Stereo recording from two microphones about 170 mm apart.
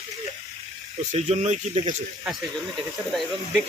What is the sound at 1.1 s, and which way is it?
Speech, 40° right (ahead or behind).